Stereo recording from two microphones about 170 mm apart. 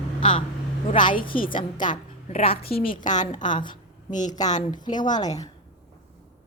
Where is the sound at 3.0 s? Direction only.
45° left (ahead or behind).